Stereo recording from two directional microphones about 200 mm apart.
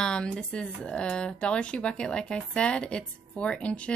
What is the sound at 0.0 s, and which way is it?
Speech, 5° left (ahead or behind).